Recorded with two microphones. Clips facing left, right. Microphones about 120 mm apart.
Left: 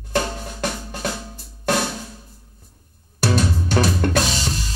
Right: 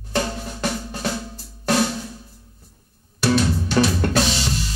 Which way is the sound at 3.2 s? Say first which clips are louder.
Right 2 dB; 40° left (ahead or behind).